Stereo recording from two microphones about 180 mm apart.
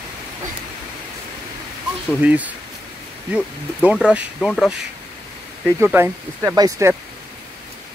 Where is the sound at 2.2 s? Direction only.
10° right (ahead or behind).